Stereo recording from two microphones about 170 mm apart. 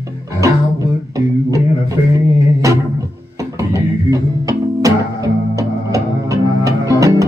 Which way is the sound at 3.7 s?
20° right (ahead or behind).